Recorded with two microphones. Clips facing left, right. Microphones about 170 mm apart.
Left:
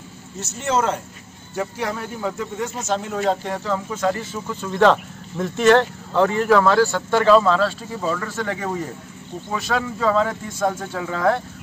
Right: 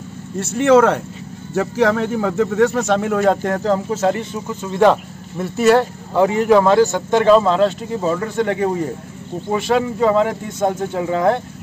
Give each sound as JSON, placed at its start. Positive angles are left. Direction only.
{"t": 0.4, "sound": "speech", "side_deg": -60}
{"t": 1.5, "sound": "speech", "side_deg": -90}
{"t": 3.9, "sound": "speech", "side_deg": -25}